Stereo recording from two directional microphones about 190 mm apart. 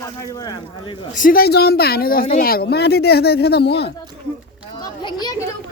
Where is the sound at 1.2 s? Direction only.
50° left (ahead or behind).